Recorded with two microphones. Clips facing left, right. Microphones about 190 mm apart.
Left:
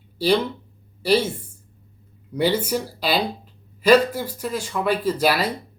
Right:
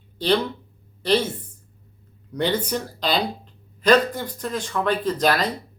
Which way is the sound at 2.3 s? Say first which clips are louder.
Left 2 dB; 10° left (ahead or behind).